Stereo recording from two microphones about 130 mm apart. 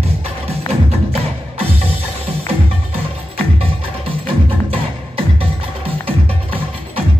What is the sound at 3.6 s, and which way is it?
Music, 45° right (ahead or behind).